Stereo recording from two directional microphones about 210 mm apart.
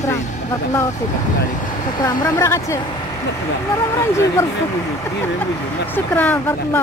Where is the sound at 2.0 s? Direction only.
15° left (ahead or behind).